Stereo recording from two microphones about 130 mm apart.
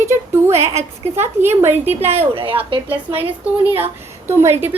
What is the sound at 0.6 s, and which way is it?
Speech, 55° right (ahead or behind).